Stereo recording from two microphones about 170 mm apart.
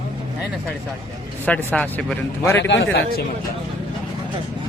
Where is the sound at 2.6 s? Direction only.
90° left.